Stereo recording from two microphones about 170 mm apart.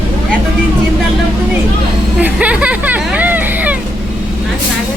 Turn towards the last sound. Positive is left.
turn(degrees=-10)  # may be behind; listen again after turning